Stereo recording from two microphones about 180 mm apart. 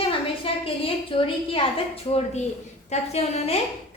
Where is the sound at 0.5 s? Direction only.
30° left (ahead or behind).